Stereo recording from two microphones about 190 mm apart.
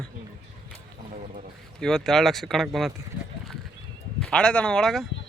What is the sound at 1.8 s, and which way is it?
Speech, centre (ahead or behind).